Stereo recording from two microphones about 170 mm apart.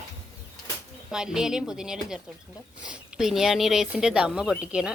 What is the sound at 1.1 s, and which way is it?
Speech, 5° right (ahead or behind).